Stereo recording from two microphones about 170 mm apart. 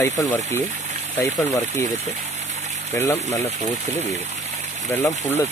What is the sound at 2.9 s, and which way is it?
Speech, 15° left (ahead or behind).